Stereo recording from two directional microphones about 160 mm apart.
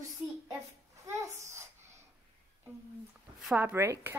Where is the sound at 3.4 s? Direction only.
10° right (ahead or behind).